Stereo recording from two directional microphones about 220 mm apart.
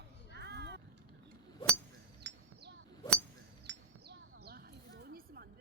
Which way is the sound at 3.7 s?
50° right (ahead or behind).